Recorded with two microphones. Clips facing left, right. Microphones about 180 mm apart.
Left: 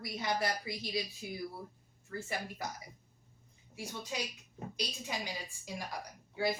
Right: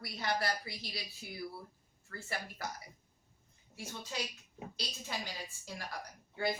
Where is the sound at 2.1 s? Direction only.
15° left (ahead or behind).